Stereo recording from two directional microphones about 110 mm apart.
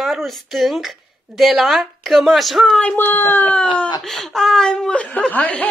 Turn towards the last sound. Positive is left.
turn(degrees=15)  # may be behind; listen again after turning